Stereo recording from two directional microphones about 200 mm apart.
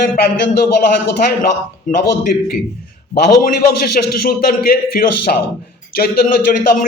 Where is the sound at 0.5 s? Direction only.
50° left (ahead or behind).